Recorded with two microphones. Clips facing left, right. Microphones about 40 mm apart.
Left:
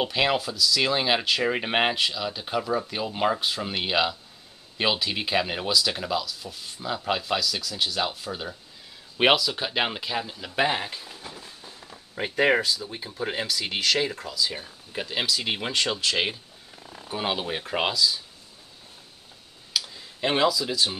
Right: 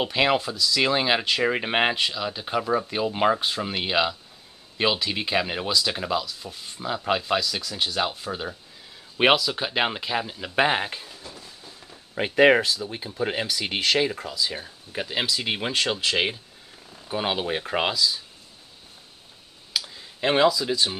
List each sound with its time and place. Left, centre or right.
0.0 s speech: centre
10.5 s speech: right
12.2 s speech: right
13.0 s speech: centre
16.8 s a sound: left
17.1 s speech: centre
19.7 s clicking: centre